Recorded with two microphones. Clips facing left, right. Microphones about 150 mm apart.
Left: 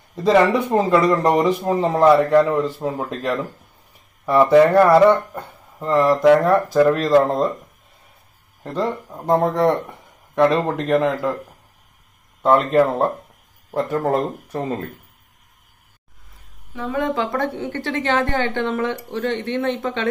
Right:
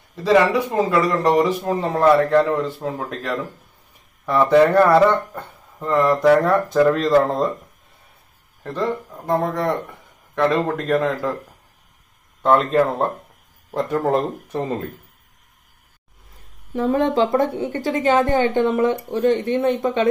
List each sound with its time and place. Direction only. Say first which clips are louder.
0.8 s speech: left 3 dB; 20° left (ahead or behind); by 7.5 s centre (ahead or behind)
8.7 s speech: even; 20° left (ahead or behind)
10.3 s speech: left 2 dB; 15° left (ahead or behind)
12.4 s speech: left 1 dB; 10° left (ahead or behind)
16.7 s speech: right 5 dB; 40° right (ahead or behind)
17.1 s speech: right 4 dB; 25° right (ahead or behind)